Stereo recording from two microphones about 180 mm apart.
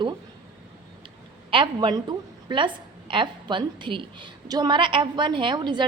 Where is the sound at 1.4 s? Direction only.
25° right (ahead or behind).